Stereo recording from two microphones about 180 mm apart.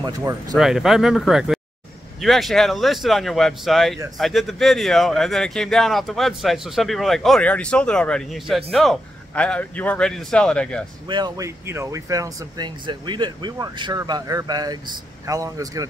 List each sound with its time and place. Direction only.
0.0 s speech: 20° right (ahead or behind)
0.6 s speech: centre (ahead or behind)
11.1 s speech: 25° right (ahead or behind)